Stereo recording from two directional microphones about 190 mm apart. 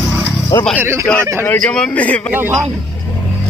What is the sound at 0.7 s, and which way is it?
Speech, 10° right (ahead or behind).